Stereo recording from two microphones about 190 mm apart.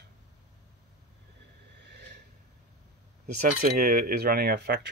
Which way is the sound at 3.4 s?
45° right (ahead or behind).